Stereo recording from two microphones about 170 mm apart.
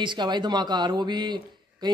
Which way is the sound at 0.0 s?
25° right (ahead or behind).